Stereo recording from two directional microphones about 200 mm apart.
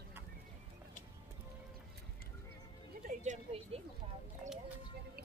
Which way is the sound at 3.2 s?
35° right (ahead or behind).